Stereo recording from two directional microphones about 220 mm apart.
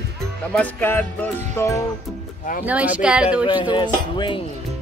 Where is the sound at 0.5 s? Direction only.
10° left (ahead or behind).